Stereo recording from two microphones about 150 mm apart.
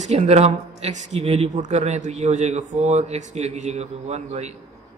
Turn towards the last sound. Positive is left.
turn(degrees=-45)  # may be behind; listen again after turning